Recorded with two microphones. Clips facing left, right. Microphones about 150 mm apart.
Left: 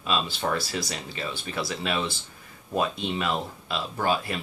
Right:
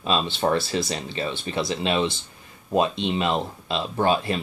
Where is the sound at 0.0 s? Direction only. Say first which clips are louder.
Right 4 dB; 30° right (ahead or behind).